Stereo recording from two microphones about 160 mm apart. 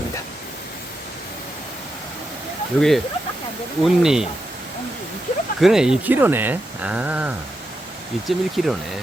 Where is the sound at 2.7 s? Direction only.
Centre (ahead or behind).